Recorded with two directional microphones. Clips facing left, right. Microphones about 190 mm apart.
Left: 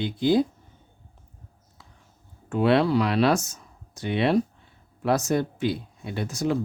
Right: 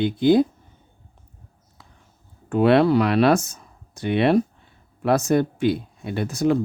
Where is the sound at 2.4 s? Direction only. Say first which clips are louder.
Right 4 dB; 55° right (ahead or behind).